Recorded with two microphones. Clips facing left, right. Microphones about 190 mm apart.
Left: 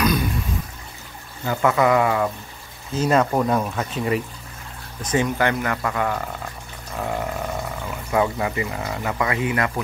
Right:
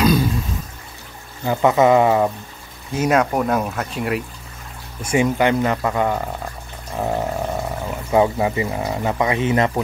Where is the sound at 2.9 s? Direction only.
10° right (ahead or behind).